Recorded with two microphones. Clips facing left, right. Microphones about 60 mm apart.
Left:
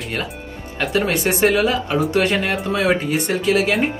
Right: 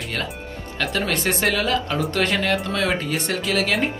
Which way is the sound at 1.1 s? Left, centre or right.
Centre.